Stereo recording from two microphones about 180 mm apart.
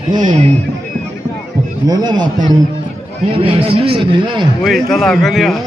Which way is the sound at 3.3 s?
30° right (ahead or behind).